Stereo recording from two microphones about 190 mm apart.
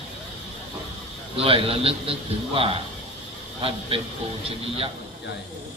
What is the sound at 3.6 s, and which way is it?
Speech, 30° right (ahead or behind).